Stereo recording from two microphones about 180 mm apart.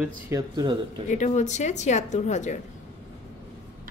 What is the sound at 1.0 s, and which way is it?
A woman's voice, 40° left (ahead or behind).